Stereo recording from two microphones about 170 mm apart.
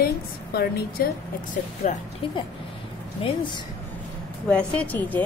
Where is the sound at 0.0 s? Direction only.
65° left (ahead or behind).